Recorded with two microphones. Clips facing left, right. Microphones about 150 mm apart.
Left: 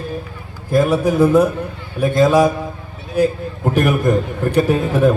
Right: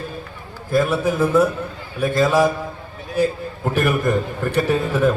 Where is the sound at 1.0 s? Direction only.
15° left (ahead or behind).